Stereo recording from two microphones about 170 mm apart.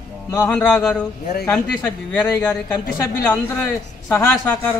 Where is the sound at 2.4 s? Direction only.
20° left (ahead or behind).